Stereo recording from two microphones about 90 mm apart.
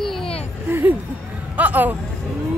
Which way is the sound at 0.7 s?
25° right (ahead or behind).